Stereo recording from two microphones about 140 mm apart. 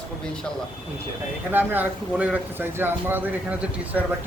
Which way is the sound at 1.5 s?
15° right (ahead or behind).